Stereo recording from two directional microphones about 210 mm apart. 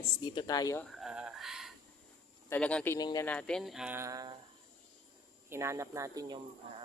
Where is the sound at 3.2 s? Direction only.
5° left (ahead or behind); by 4.4 s 15° right (ahead or behind).